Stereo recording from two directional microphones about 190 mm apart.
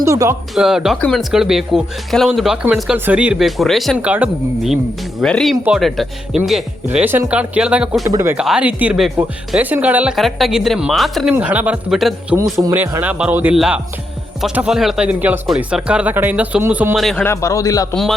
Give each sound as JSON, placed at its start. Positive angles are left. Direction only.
{"t": 0.0, "sound": "speech", "side_deg": -15}
{"t": 0.5, "sound": "speech", "side_deg": 0}
{"t": 12.5, "sound": "speech", "side_deg": -15}
{"t": 16.9, "sound": "speech", "side_deg": 0}
{"t": 17.2, "sound": "a man's voice", "side_deg": 15}